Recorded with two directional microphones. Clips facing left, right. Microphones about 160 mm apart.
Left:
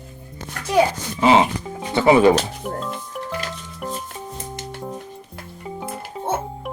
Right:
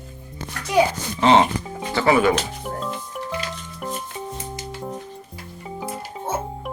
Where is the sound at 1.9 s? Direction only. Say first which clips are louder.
Left 4 dB; 20° left (ahead or behind).